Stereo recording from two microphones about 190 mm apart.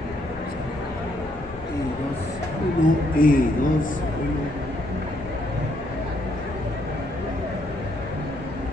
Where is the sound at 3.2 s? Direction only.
45° left (ahead or behind).